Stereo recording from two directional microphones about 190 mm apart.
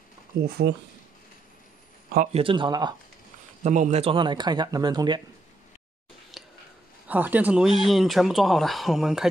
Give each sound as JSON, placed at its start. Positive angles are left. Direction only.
{"t": 0.4, "sound": "speech", "side_deg": -60}
{"t": 2.3, "sound": "speech", "side_deg": -25}
{"t": 3.6, "sound": "speech", "side_deg": -40}
{"t": 6.3, "sound": "a sound", "side_deg": 0}
{"t": 7.1, "sound": "speech", "side_deg": -10}